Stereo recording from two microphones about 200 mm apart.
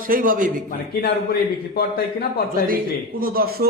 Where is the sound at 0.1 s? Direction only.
45° right (ahead or behind).